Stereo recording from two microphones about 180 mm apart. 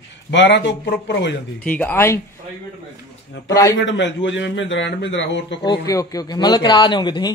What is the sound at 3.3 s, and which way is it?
A man's voice, 75° left (ahead or behind).